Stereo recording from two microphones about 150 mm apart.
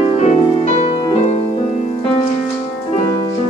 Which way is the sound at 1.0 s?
35° left (ahead or behind).